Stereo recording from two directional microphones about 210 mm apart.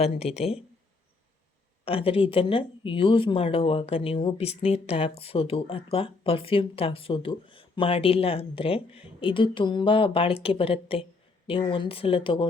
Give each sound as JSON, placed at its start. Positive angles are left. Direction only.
{"t": 0.0, "sound": "speech", "side_deg": 30}
{"t": 1.8, "sound": "speech", "side_deg": 25}